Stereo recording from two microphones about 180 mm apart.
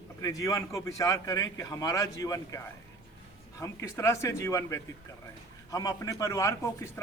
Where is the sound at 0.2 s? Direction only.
20° left (ahead or behind).